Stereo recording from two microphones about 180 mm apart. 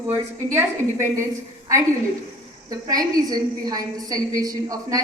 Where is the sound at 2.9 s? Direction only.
20° right (ahead or behind).